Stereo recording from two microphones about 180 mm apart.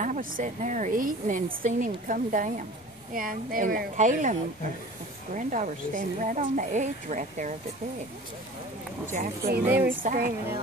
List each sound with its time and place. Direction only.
0.0 s a woman's voice: 45° right (ahead or behind)
9.0 s a woman's voice: 45° right (ahead or behind)